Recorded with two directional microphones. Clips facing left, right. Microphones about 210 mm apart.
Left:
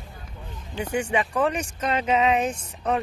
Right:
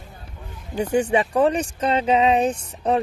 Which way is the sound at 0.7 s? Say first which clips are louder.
Right 6 dB; 35° right (ahead or behind).